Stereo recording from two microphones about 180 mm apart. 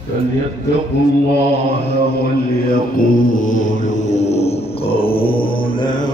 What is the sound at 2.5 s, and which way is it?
Mantra, 50° left (ahead or behind).